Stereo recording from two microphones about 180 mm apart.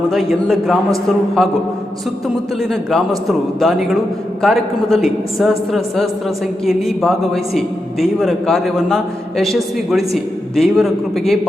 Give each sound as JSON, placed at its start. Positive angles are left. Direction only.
{"t": 0.1, "sound": "a man's voice", "side_deg": 0}
{"t": 3.2, "sound": "a man's voice", "side_deg": 0}